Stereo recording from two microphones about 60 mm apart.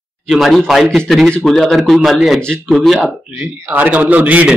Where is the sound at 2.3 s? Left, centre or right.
Centre.